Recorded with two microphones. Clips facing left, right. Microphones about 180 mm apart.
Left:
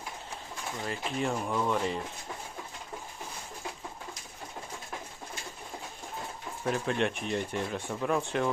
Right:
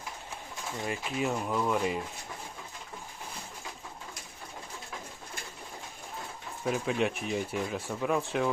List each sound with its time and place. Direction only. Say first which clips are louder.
0.9 s speech: even; 5° right (ahead or behind)
6.7 s speech: even; 5° right (ahead or behind)